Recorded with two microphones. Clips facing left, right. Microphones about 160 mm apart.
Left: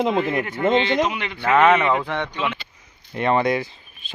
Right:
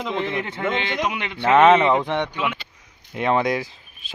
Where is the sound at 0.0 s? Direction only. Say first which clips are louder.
Left 5 dB; 45° left (ahead or behind).